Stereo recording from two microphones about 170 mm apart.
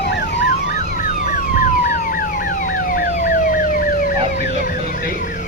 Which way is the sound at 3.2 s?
55° left (ahead or behind).